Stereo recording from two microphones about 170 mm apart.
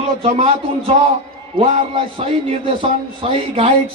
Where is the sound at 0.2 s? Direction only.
35° right (ahead or behind).